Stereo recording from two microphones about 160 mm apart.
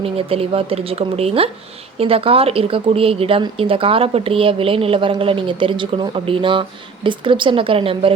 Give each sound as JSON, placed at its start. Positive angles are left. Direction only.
{"t": 0.0, "sound": "a woman's voice", "side_deg": -35}